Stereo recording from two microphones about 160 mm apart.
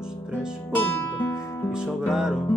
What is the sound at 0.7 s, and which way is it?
Music, 10° left (ahead or behind).